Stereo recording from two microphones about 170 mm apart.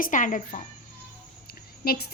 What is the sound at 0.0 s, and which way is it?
Speech, 50° left (ahead or behind).